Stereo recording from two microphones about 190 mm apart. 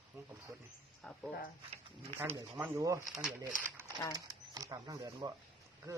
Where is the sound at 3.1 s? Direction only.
5° right (ahead or behind).